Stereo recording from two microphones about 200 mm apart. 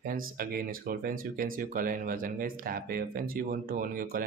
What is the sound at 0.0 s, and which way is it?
Speech, 45° right (ahead or behind).